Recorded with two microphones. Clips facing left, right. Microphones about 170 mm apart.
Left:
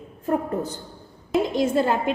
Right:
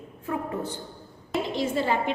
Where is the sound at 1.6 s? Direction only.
45° left (ahead or behind).